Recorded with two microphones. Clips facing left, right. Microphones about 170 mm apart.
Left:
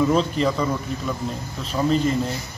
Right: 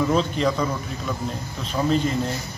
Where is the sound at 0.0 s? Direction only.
Centre (ahead or behind).